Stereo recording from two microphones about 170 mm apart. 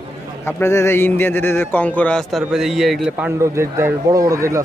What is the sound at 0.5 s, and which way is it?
A man's voice, 15° left (ahead or behind).